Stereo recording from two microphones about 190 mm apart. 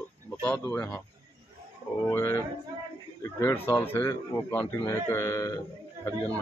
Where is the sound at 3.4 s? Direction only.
10° left (ahead or behind).